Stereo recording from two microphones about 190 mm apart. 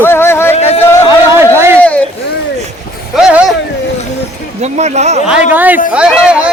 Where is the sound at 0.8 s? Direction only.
15° left (ahead or behind).